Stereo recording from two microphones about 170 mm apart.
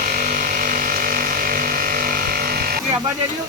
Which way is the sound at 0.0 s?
55° right (ahead or behind).